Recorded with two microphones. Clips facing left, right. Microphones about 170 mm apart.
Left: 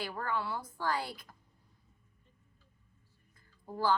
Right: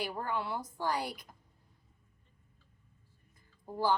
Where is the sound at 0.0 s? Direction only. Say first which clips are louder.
Even; 15° right (ahead or behind).